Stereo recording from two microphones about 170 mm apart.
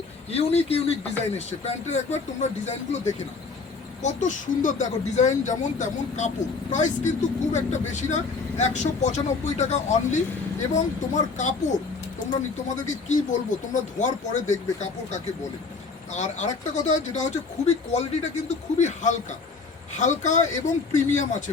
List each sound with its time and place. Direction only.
0.3 s speech: 35° left (ahead or behind)